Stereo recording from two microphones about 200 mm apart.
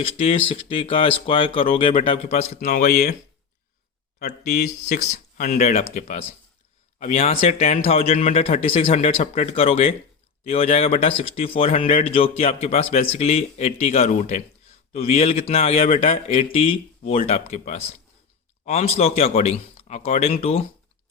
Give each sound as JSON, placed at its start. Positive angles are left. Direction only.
{"t": 0.0, "sound": "speech", "side_deg": 30}
{"t": 4.2, "sound": "speech", "side_deg": 55}
{"t": 5.1, "sound": "speech", "side_deg": 40}